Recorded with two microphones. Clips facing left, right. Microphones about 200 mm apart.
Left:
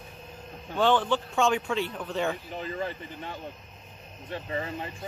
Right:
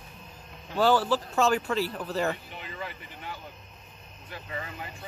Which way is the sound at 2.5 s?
40° left (ahead or behind).